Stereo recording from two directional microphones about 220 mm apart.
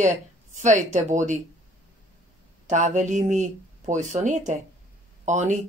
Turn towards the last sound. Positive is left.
turn(degrees=-35)  # may be behind; listen again after turning